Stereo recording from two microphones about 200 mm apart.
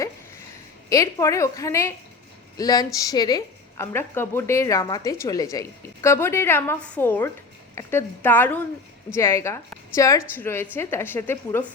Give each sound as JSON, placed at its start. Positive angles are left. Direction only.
{"t": 0.9, "sound": "a woman's voice", "side_deg": 15}